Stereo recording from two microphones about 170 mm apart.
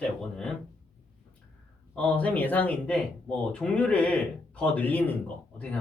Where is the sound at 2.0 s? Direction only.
10° left (ahead or behind).